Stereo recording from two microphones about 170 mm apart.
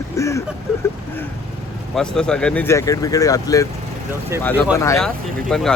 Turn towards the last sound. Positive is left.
turn(degrees=0)  # may be behind; listen again after turning